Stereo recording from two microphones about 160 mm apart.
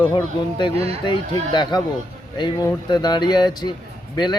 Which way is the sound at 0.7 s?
40° right (ahead or behind).